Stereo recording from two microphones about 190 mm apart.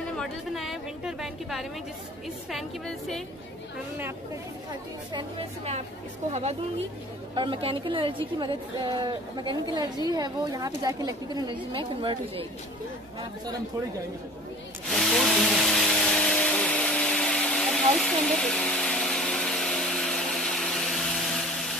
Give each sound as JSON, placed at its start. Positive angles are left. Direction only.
{"t": 0.2, "sound": "a woman's voice", "side_deg": 0}
{"t": 7.3, "sound": "a woman's voice", "side_deg": -25}
{"t": 14.9, "sound": "vacuum cleaner", "side_deg": 0}